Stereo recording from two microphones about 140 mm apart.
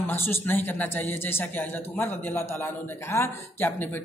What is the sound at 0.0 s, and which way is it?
A man's voice, 15° left (ahead or behind).